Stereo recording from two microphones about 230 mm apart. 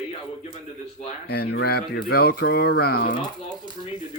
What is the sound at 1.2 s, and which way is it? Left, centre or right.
Speech, left.